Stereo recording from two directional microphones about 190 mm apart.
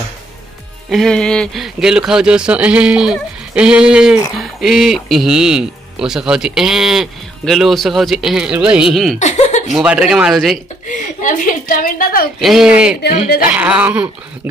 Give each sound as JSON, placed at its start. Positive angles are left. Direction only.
{"t": 0.8, "sound": "speech", "side_deg": 0}
{"t": 9.2, "sound": "laughter", "side_deg": 40}
{"t": 9.7, "sound": "speech", "side_deg": -5}
{"t": 10.9, "sound": "a sound", "side_deg": 45}
{"t": 12.4, "sound": "speech", "side_deg": 0}
{"t": 13.5, "sound": "dog", "side_deg": -5}